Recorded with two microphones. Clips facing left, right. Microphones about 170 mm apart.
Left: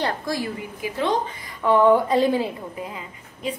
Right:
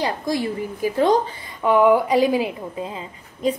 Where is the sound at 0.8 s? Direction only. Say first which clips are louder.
Right 6 dB; 40° right (ahead or behind).